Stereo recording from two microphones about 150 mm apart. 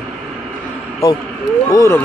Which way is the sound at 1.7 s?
20° left (ahead or behind).